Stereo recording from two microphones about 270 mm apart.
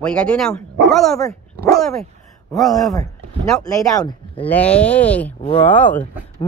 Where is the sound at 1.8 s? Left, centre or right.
Centre.